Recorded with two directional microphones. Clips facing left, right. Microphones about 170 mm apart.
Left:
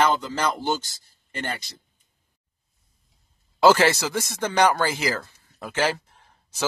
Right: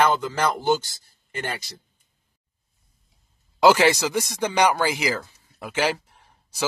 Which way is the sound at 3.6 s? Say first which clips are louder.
Right 1 dB; 15° right (ahead or behind).